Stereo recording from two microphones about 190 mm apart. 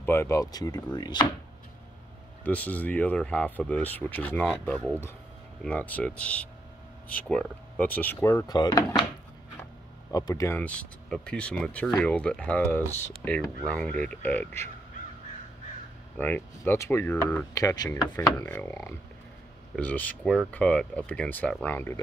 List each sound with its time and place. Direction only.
0.0 s speech: 15° left (ahead or behind)
2.4 s speech: 10° left (ahead or behind)
10.1 s speech: 20° left (ahead or behind)
16.2 s speech: 10° left (ahead or behind)